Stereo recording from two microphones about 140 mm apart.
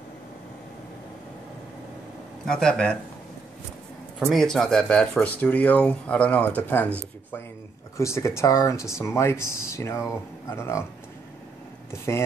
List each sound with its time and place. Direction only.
2.4 s speech: 5° left (ahead or behind)
4.3 s speech: centre (ahead or behind)
8.0 s speech: 20° left (ahead or behind)